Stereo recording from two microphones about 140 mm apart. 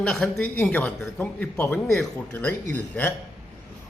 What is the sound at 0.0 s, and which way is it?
A woman's voice, 5° left (ahead or behind).